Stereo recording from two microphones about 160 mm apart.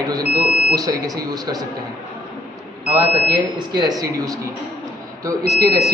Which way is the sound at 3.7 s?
25° right (ahead or behind).